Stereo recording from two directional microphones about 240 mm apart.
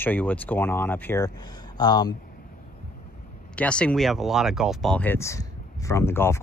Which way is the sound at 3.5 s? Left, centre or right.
Centre.